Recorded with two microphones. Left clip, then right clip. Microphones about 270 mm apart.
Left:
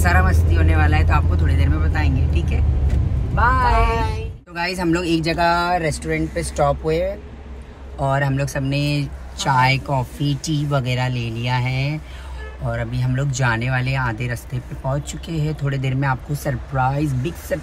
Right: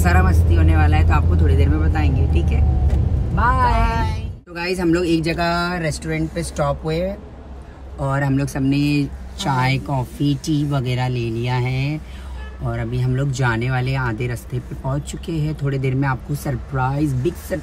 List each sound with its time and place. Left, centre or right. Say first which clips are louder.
0.0 s speech: left 1 dB; centre
5.7 s speech: left 4 dB; centre
8.0 s speech: left 1 dB; centre